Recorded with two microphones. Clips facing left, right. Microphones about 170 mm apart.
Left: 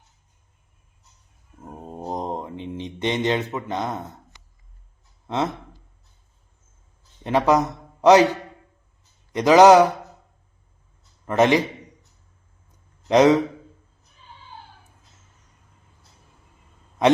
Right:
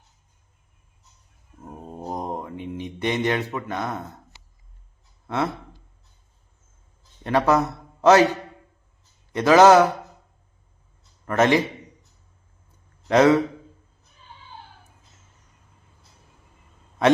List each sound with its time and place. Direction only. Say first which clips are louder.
1.6 s mantra: left 1 dB; 15° left (ahead or behind)
7.3 s a man's voice: left 1 dB; 15° left (ahead or behind)
11.3 s a man's voice: left 1 dB; 15° left (ahead or behind)
13.1 s a man's voice: left 1 dB; 15° left (ahead or behind)